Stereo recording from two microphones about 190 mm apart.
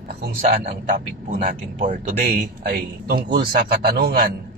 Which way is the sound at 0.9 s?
45° right (ahead or behind).